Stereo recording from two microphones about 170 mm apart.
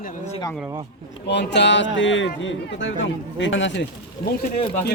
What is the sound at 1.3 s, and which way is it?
Speech, 90° left.